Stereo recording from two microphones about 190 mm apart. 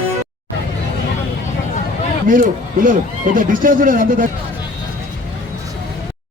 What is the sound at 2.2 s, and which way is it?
A man's voice, 45° right (ahead or behind).